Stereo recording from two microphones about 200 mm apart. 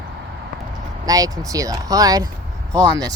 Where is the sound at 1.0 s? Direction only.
20° right (ahead or behind).